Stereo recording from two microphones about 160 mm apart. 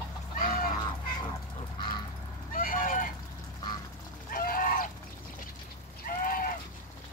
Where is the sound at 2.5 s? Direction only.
60° left (ahead or behind).